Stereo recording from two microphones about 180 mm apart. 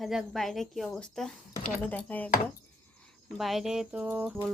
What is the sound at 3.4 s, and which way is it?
Speech, centre (ahead or behind).